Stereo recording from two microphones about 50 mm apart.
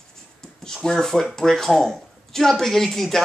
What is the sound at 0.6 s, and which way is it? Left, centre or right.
Speech, centre.